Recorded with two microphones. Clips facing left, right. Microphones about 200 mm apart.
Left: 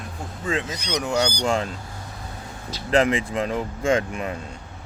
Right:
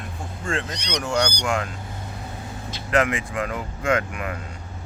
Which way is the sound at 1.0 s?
20° left (ahead or behind).